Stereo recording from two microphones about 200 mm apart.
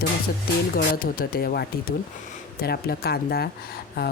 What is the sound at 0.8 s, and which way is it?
Speech, 45° left (ahead or behind).